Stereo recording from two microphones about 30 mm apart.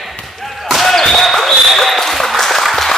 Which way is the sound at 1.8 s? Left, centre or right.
Centre.